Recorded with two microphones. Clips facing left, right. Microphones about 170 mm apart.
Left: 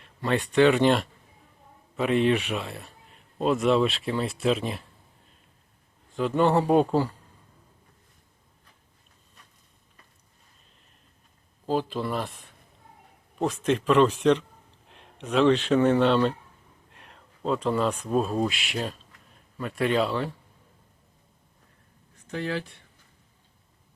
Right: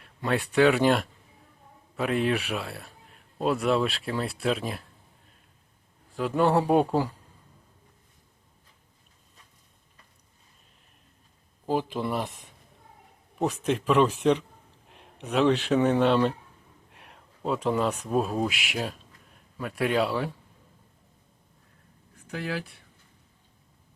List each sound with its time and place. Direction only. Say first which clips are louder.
0.0 s speech: left 1 dB; 5° right (ahead or behind)
6.1 s speech: left 1 dB; 5° right (ahead or behind)
11.6 s speech: left 1 dB; 15° right (ahead or behind)
22.3 s speech: left 2 dB; 5° right (ahead or behind)